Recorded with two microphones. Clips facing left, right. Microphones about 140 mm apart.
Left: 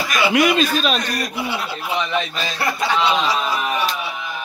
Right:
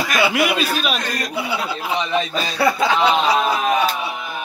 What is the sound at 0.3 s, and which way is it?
Speech, 5° right (ahead or behind).